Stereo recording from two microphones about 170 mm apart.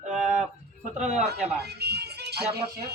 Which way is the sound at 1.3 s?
40° right (ahead or behind).